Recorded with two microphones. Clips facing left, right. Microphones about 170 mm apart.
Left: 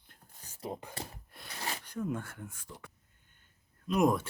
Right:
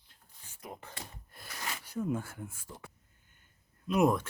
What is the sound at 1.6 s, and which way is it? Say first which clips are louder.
Zipper: left 2 dB; 35° left (ahead or behind).